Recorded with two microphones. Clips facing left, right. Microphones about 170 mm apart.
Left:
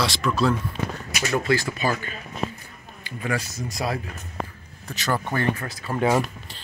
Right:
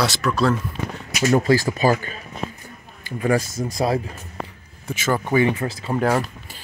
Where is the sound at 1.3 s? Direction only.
40° right (ahead or behind).